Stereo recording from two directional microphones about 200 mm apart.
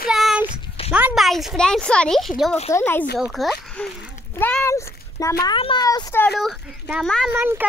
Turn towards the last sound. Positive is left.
turn(degrees=-10)  # may be behind; listen again after turning